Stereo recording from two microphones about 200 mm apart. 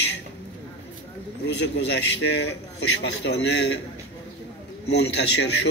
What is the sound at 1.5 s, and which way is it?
Speech, 60° left (ahead or behind).